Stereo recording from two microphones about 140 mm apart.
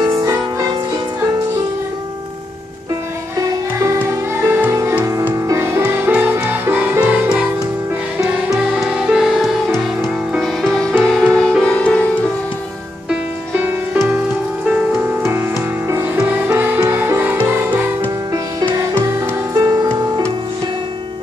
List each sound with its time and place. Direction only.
0.2 s music: 25° right (ahead or behind)
3.8 s music: 20° right (ahead or behind); by 12.0 s 5° left (ahead or behind)
13.1 s music: 15° right (ahead or behind)
15.2 s music: 15° right (ahead or behind)
19.0 s music: 20° right (ahead or behind)